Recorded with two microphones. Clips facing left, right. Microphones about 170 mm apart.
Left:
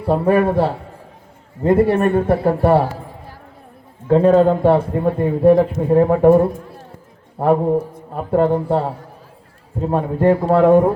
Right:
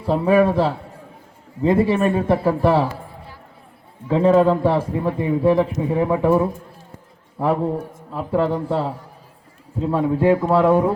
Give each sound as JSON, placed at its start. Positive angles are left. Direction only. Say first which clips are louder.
{"t": 0.0, "sound": "a man's voice", "louder": "left 1 dB", "side_deg": 55}
{"t": 4.1, "sound": "a man's voice", "louder": "left 3 dB", "side_deg": 60}